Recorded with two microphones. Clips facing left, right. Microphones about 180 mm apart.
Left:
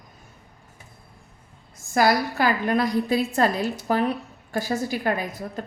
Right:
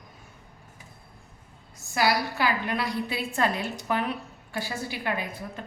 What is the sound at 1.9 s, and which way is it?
A woman's voice, 45° left (ahead or behind).